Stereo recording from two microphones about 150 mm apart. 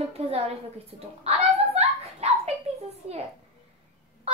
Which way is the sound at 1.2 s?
45° right (ahead or behind).